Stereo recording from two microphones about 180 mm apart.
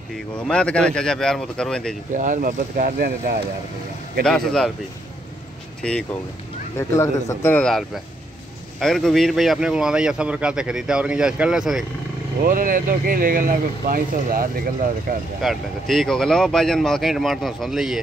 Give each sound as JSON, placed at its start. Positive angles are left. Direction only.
{"t": 0.5, "sound": "speech", "side_deg": 5}
{"t": 2.1, "sound": "speech", "side_deg": -45}
{"t": 4.2, "sound": "speech", "side_deg": 5}
{"t": 5.8, "sound": "speech", "side_deg": 5}
{"t": 6.8, "sound": "speech", "side_deg": 15}
{"t": 12.4, "sound": "speech", "side_deg": -50}
{"t": 15.4, "sound": "speech", "side_deg": 0}